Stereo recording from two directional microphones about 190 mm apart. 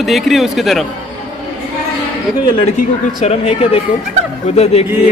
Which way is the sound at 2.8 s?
35° left (ahead or behind).